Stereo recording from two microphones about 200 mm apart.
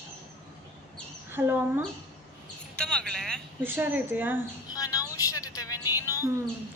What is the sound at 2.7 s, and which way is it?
Speech, 5° left (ahead or behind).